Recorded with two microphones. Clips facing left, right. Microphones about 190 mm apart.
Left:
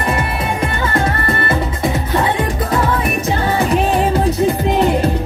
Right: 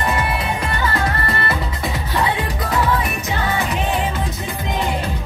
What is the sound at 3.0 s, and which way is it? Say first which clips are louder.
Music: left 5 dB; 30° left (ahead or behind).